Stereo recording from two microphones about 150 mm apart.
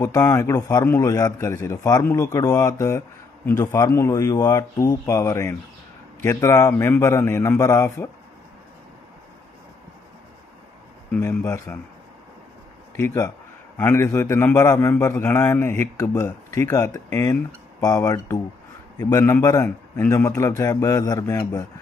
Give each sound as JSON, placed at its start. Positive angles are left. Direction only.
{"t": 0.0, "sound": "a man's voice", "side_deg": 20}
{"t": 11.1, "sound": "a man's voice", "side_deg": 20}
{"t": 12.9, "sound": "a man's voice", "side_deg": 15}